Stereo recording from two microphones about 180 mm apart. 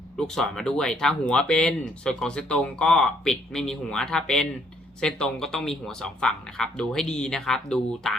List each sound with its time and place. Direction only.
0.2 s speech: 5° left (ahead or behind)